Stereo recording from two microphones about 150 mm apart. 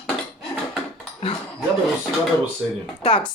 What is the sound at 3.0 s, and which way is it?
Speech, 40° left (ahead or behind).